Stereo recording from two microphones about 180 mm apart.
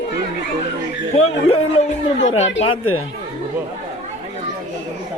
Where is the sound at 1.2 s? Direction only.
35° left (ahead or behind).